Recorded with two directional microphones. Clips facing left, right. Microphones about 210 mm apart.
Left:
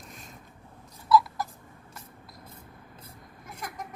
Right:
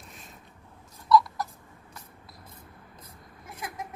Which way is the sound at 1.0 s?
5° left (ahead or behind).